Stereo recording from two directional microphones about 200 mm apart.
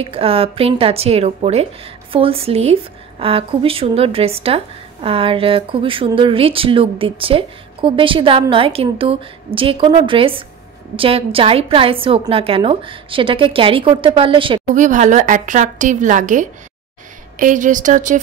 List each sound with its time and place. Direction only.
0.0 s speech: 30° right (ahead or behind)
14.7 s speech: 40° right (ahead or behind)